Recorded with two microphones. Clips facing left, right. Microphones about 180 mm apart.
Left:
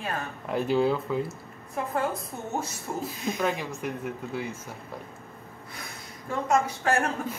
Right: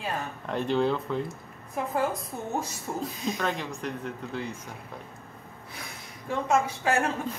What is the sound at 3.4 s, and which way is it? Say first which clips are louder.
Speech: left 2 dB; 10° left (ahead or behind).